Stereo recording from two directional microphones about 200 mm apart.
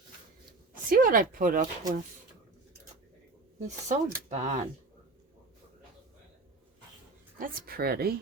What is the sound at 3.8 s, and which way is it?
Speech, 35° right (ahead or behind).